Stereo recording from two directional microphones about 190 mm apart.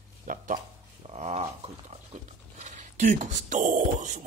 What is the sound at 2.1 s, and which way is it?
Speech, 35° right (ahead or behind).